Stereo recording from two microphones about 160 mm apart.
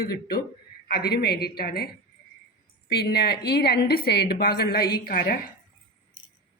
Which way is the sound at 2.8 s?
80° left.